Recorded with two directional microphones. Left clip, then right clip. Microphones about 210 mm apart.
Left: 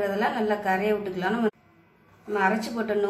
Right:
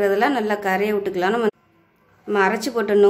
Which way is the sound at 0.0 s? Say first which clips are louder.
Right 7 dB; 55° right (ahead or behind).